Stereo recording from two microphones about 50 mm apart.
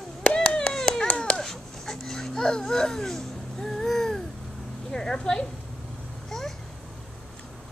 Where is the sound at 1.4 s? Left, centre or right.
Centre.